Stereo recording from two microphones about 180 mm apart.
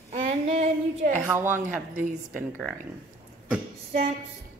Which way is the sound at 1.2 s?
15° right (ahead or behind).